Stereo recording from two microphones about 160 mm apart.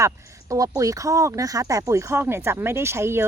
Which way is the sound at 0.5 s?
20° right (ahead or behind).